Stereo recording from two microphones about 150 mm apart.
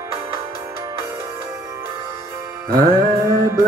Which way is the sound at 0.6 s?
20° right (ahead or behind).